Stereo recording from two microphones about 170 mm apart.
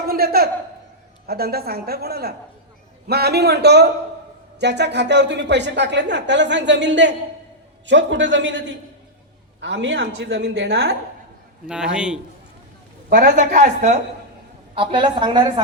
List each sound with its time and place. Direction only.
0.0 s a woman's voice: 60° right (ahead or behind)
4.6 s a woman's voice: 85° right
11.6 s a man's voice: 5° right (ahead or behind)
13.1 s a woman's voice: 60° right (ahead or behind)
14.8 s a woman's voice: 30° right (ahead or behind)